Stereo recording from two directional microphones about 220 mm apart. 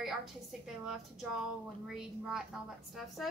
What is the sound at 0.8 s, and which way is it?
Speech, centre (ahead or behind).